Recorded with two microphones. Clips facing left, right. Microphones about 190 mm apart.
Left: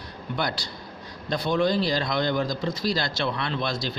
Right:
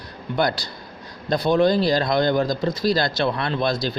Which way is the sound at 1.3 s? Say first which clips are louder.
Right 5 dB; 35° right (ahead or behind).